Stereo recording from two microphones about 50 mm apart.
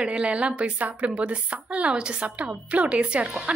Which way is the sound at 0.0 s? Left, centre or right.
Right.